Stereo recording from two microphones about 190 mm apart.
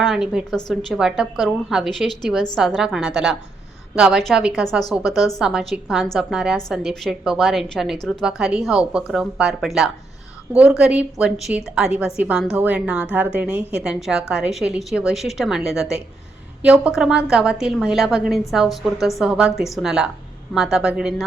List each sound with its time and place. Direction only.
0.0 s a woman's voice: centre (ahead or behind)